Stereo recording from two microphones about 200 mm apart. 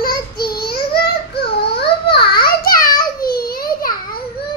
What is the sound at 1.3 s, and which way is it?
Child singing, 55° left (ahead or behind).